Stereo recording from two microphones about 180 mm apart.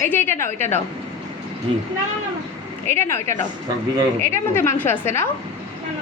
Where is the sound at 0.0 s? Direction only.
10° left (ahead or behind).